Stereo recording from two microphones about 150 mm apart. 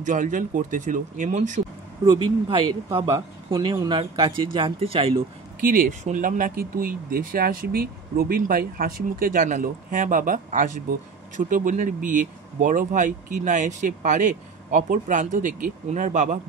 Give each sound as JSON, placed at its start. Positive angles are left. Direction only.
{"t": 0.0, "sound": "speech", "side_deg": -60}
{"t": 2.0, "sound": "speech", "side_deg": -30}
{"t": 5.6, "sound": "speech", "side_deg": -65}